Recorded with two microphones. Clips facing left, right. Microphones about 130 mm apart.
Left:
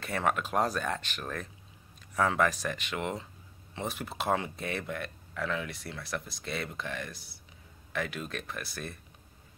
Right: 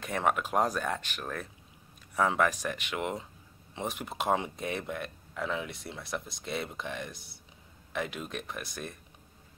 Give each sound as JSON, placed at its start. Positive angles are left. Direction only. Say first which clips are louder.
{"t": 0.0, "sound": "speech", "louder": "right 1 dB", "side_deg": -15}